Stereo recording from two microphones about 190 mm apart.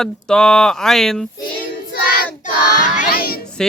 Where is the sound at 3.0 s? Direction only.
50° left (ahead or behind).